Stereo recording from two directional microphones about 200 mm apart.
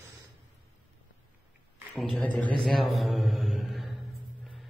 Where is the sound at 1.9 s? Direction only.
Centre (ahead or behind).